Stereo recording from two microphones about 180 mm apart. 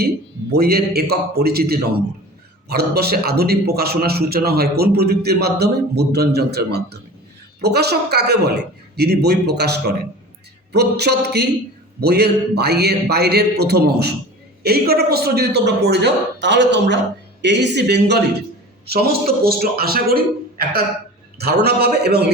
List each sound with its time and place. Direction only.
0.5 s a man's voice: 60° right (ahead or behind)